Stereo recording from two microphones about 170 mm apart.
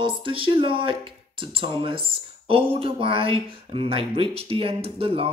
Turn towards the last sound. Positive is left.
turn(degrees=-35)  # may be behind; listen again after turning